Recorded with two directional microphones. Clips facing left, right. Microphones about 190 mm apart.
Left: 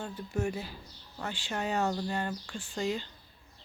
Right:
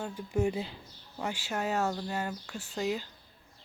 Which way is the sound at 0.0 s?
15° right (ahead or behind).